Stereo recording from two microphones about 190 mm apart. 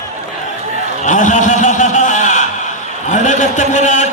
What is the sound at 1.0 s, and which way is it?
A man's voice, 40° left (ahead or behind).